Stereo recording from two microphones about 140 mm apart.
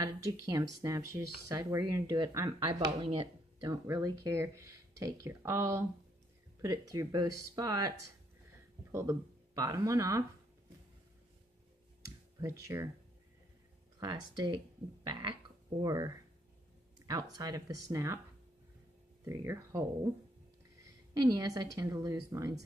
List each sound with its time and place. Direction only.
0.0 s speech: 25° right (ahead or behind)
8.9 s speech: 20° right (ahead or behind)
12.4 s speech: 20° right (ahead or behind)
13.9 s speech: 30° right (ahead or behind)
15.8 s speech: 25° right (ahead or behind)
19.2 s speech: 20° right (ahead or behind)
21.1 s speech: 30° right (ahead or behind)